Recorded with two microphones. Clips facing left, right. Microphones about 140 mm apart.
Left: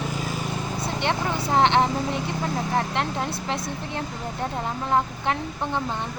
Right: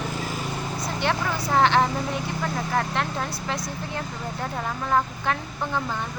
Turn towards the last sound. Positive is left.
turn(degrees=25)  # may be behind; listen again after turning